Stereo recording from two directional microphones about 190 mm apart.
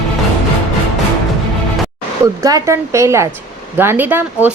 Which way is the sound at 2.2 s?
20° right (ahead or behind).